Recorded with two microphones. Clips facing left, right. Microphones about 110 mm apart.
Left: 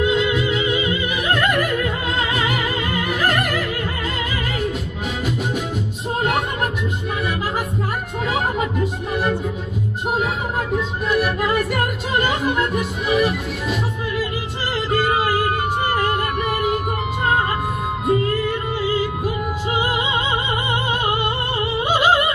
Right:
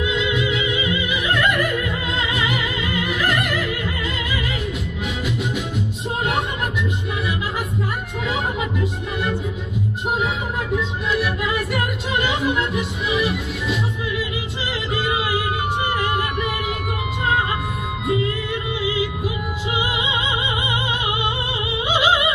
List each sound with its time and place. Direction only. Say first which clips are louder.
0.0 s music: left 3 dB; 40° left (ahead or behind)
8.3 s music: left 3 dB; 45° left (ahead or behind)
10.7 s music: left 1 dB; 45° left (ahead or behind)
18.0 s music: left 3 dB; 45° left (ahead or behind)